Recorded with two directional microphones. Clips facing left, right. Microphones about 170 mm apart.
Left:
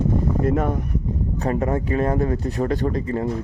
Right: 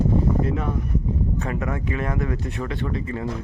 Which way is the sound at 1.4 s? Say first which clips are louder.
Left 5 dB; 35° left (ahead or behind).